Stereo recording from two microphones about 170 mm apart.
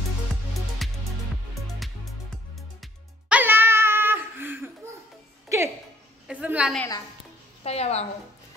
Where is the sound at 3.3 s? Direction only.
10° right (ahead or behind).